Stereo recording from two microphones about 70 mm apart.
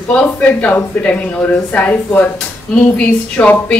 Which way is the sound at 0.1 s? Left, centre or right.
Left.